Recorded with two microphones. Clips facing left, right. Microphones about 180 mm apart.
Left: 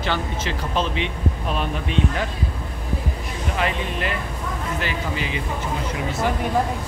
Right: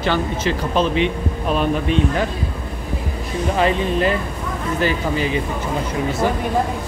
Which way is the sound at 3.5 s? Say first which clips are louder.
Right 7 dB; 35° right (ahead or behind).